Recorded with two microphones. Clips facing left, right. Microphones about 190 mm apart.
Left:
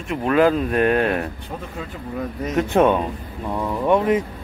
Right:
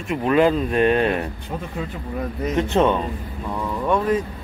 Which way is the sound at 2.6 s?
10° left (ahead or behind).